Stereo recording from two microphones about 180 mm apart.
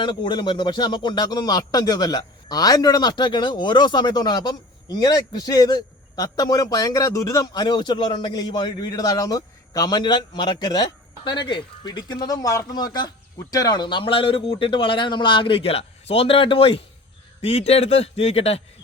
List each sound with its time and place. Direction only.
0.0 s a man's voice: 25° left (ahead or behind)